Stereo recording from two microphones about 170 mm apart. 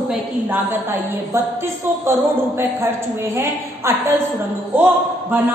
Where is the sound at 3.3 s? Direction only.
15° right (ahead or behind).